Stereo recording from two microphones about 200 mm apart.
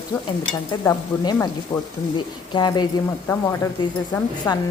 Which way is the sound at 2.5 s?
20° left (ahead or behind).